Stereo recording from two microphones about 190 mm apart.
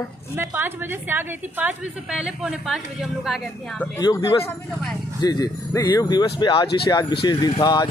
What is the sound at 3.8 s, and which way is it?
Speech, 15° left (ahead or behind).